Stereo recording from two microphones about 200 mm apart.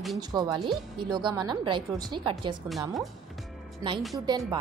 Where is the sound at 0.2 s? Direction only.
20° right (ahead or behind).